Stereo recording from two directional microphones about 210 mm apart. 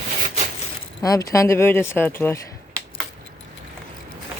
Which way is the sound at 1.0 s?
15° left (ahead or behind).